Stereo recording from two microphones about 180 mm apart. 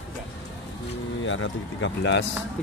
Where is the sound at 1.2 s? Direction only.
90° left.